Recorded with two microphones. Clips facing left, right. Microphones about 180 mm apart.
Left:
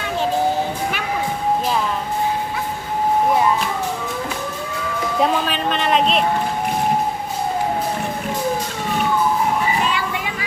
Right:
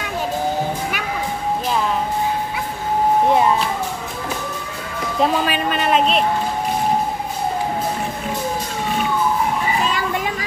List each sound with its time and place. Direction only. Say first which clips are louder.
5.2 s a woman's voice: right 2 dB; 10° right (ahead or behind)